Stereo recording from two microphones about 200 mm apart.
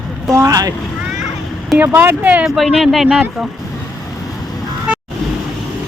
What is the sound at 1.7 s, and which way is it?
Speech, 10° right (ahead or behind).